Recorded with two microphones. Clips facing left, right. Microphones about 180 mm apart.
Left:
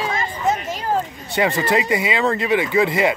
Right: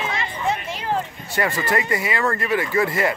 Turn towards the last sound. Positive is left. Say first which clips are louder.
# left 3 dB
turn(degrees=20)  # may be behind; listen again after turning